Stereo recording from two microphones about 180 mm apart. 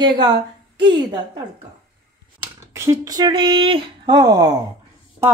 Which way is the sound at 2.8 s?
20° right (ahead or behind).